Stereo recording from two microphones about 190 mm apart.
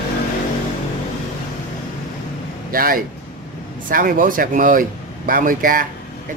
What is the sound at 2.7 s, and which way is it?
Speech, 50° right (ahead or behind).